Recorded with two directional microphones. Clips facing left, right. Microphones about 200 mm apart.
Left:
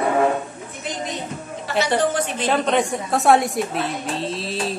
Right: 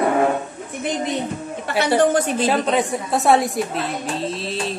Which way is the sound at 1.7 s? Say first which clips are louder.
Even; 55° right (ahead or behind).